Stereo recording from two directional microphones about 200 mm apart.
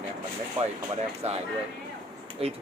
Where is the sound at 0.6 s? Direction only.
30° right (ahead or behind).